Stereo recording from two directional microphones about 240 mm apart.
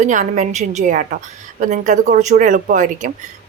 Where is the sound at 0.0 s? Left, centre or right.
Right.